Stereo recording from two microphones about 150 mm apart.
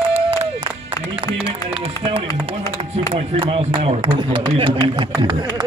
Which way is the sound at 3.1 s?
35° right (ahead or behind).